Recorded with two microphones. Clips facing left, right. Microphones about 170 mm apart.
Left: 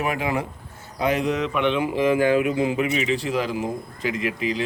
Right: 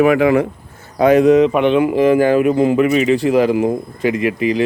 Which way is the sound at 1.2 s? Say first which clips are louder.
Right 13 dB; 45° right (ahead or behind).